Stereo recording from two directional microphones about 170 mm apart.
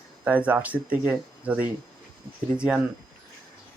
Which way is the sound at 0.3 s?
10° right (ahead or behind).